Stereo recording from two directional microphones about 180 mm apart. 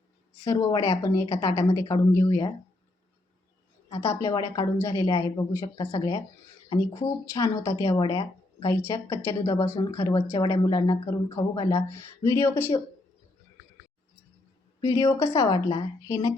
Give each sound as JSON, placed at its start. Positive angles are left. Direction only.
{"t": 0.4, "sound": "a woman's voice", "side_deg": 20}
{"t": 3.8, "sound": "a woman's voice", "side_deg": 20}
{"t": 14.8, "sound": "a woman's voice", "side_deg": 20}